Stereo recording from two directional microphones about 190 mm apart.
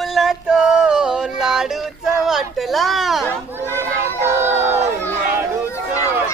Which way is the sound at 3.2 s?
10° left (ahead or behind).